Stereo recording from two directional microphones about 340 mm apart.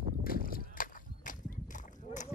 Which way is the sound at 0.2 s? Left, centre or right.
Left.